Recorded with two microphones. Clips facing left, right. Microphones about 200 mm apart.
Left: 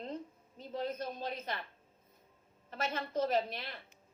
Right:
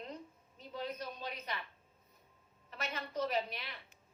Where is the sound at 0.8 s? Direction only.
50° left (ahead or behind).